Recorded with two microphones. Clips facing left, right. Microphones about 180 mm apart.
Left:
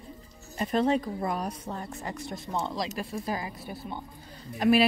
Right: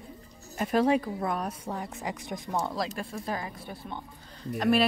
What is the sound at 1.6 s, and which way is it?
Speech, 15° right (ahead or behind).